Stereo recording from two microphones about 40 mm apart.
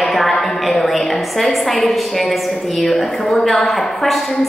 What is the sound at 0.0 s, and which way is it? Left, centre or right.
A woman's voice, centre.